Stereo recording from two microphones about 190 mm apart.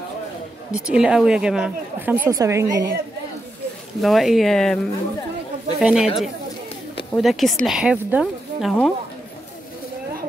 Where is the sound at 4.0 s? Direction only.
Centre (ahead or behind).